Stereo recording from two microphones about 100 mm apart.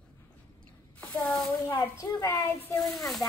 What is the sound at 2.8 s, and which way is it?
Speech, 5° left (ahead or behind).